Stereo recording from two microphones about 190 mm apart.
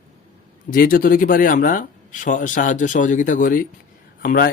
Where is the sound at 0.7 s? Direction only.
50° left (ahead or behind).